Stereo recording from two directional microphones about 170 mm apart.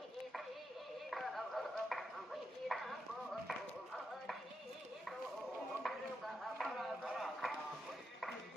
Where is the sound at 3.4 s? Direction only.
Centre (ahead or behind).